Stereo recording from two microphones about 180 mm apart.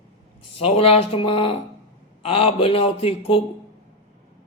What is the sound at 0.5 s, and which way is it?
Speech, 35° left (ahead or behind).